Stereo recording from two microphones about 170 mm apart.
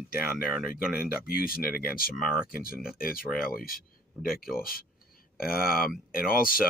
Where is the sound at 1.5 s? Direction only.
60° left (ahead or behind).